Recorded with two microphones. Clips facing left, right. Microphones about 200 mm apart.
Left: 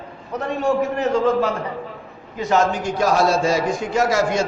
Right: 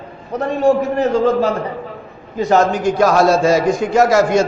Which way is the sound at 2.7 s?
75° right (ahead or behind).